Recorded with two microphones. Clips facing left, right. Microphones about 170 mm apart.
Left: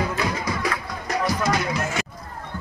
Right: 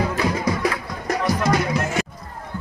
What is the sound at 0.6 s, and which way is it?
Music, 55° right (ahead or behind).